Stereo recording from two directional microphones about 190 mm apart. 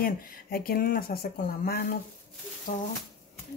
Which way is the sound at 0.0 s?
50° left (ahead or behind).